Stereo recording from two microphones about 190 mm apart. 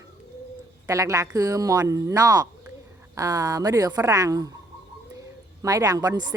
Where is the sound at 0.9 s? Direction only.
15° right (ahead or behind).